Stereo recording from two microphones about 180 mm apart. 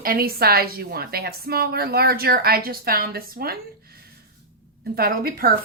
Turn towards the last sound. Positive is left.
turn(degrees=-55)  # may be behind; listen again after turning